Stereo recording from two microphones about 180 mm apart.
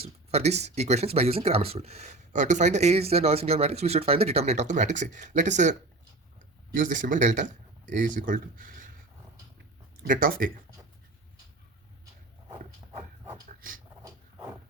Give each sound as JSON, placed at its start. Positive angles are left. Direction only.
{"t": 0.3, "sound": "speech", "side_deg": -35}
{"t": 6.7, "sound": "speech", "side_deg": -45}
{"t": 10.1, "sound": "speech", "side_deg": -50}
{"t": 14.0, "sound": "a sound", "side_deg": -15}